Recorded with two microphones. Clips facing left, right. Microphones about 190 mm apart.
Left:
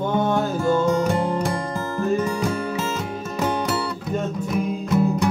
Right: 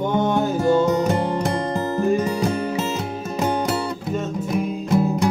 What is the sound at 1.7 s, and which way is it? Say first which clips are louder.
Music: right 3 dB; 20° right (ahead or behind).